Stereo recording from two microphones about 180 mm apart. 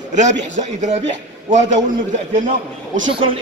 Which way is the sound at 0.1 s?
40° right (ahead or behind).